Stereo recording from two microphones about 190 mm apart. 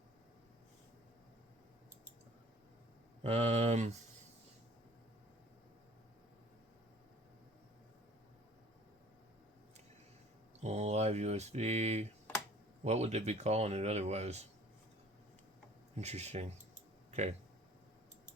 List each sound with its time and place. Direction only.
3.2 s speech: 35° right (ahead or behind)
10.6 s a sound: 35° right (ahead or behind)
12.8 s speech: 35° right (ahead or behind)
16.0 s speech: 35° right (ahead or behind)